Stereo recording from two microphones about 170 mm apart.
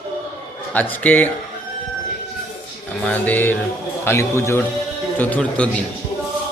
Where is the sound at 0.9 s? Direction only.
10° left (ahead or behind).